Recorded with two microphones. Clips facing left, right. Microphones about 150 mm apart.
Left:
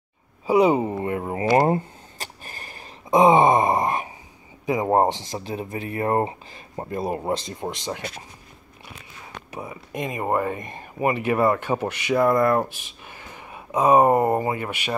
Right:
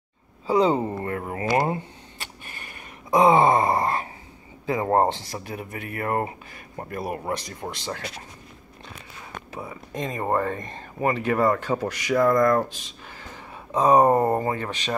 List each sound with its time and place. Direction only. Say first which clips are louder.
0.5 s a sound: left 3 dB; 15° left (ahead or behind); by 2.8 s 35° left (ahead or behind)
3.1 s groan: left 2 dB; 20° left (ahead or behind)
4.6 s speech: left 1 dB; 15° left (ahead or behind)
9.5 s speech: left 2 dB; 15° left (ahead or behind)